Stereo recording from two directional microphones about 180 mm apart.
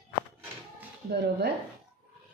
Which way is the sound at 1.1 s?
65° right (ahead or behind).